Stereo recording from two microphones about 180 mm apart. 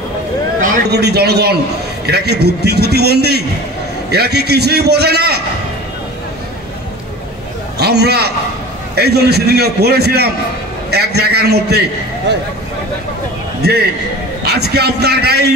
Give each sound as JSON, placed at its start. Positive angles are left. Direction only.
{"t": 0.8, "sound": "a man's voice", "side_deg": -65}
{"t": 7.8, "sound": "a man's voice", "side_deg": -65}
{"t": 13.6, "sound": "a man's voice", "side_deg": -60}